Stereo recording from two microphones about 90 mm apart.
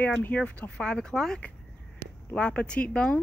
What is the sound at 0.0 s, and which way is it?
Speech, 15° left (ahead or behind).